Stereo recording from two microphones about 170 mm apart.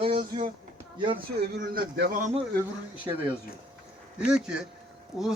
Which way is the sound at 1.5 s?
70° right (ahead or behind).